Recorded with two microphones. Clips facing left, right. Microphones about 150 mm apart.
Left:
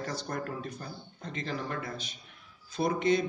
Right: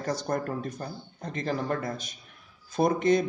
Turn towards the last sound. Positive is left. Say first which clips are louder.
# right 4 dB
turn(degrees=-45)  # may be behind; listen again after turning